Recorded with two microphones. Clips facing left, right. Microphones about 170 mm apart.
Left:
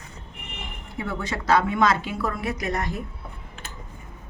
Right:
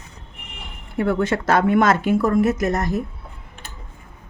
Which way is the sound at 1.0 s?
55° right (ahead or behind).